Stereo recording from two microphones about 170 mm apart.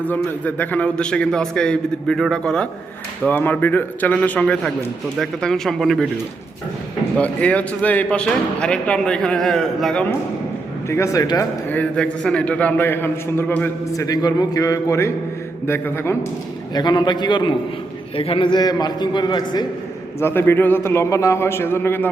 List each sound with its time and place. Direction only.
0.0 s a man's voice: 10° left (ahead or behind)
7.2 s a man's voice: 10° left (ahead or behind)
10.8 s a man's voice: 15° left (ahead or behind)
11.7 s a man's voice: 10° left (ahead or behind)
16.7 s a man's voice: 25° left (ahead or behind)
20.1 s a man's voice: 15° left (ahead or behind)